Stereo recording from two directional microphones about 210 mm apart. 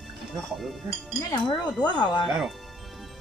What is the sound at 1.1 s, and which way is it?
Speech, 20° left (ahead or behind).